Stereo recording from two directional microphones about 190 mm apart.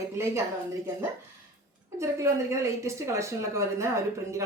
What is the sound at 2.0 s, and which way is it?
Speech, 15° right (ahead or behind).